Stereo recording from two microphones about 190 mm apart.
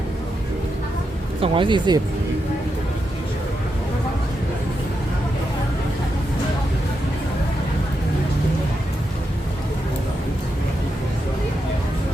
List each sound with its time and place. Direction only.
1.4 s speech: 25° right (ahead or behind)